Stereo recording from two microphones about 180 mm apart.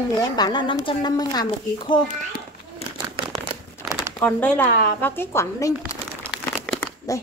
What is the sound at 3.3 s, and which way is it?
Crumpling, 20° right (ahead or behind).